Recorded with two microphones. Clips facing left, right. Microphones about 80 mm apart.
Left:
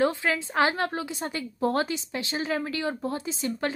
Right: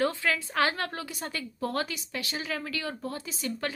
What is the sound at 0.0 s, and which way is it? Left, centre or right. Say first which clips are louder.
A woman's voice: left 3 dB; left.